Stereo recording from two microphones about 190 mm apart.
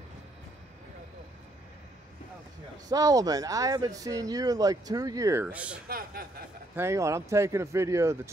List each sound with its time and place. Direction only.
2.9 s speech: 20° right (ahead or behind)
5.9 s speech: 50° right (ahead or behind)
6.7 s speech: 15° right (ahead or behind)